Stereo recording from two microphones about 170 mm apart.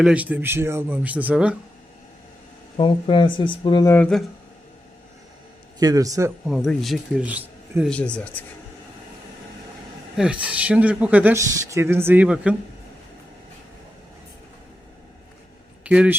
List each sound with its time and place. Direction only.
0.0 s speech: 5° right (ahead or behind)
2.7 s speech: 30° left (ahead or behind)
3.9 s speech: 5° left (ahead or behind)
5.8 s a man's voice: 20° right (ahead or behind)
6.5 s speech: centre (ahead or behind)
7.9 s speech: 5° left (ahead or behind)
10.2 s speech: 5° right (ahead or behind)
15.8 s speech: 10° right (ahead or behind)